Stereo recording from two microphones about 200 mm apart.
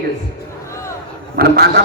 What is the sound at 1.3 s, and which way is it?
Speech, 50° right (ahead or behind).